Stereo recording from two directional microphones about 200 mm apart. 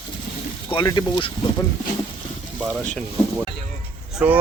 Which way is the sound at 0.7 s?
20° left (ahead or behind).